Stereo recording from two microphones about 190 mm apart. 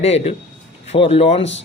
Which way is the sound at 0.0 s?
35° left (ahead or behind).